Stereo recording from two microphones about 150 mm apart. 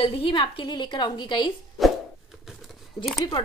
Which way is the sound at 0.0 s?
35° left (ahead or behind).